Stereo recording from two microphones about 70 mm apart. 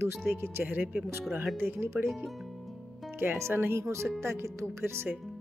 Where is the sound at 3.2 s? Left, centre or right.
Right.